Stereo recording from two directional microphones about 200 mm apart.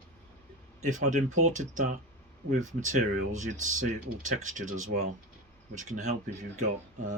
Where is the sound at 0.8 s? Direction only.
40° right (ahead or behind).